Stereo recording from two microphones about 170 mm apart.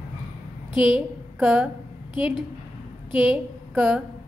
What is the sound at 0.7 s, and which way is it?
Speech, 30° left (ahead or behind).